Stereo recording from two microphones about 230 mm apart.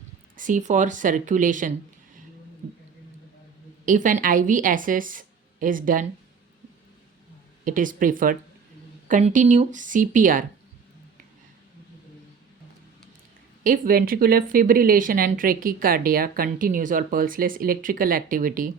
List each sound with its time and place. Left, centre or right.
0.3 s speech: right
3.8 s speech: right
7.6 s speech: right
13.7 s speech: right